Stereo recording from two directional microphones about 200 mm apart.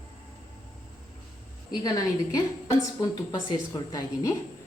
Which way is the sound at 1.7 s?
20° left (ahead or behind).